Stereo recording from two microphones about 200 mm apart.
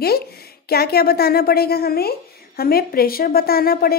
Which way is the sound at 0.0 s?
50° left (ahead or behind).